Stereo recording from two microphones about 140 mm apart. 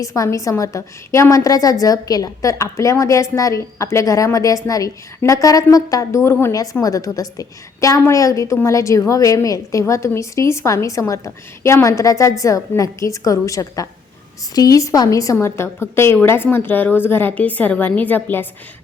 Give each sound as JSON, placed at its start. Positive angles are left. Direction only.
{"t": 0.0, "sound": "a woman's voice", "side_deg": 25}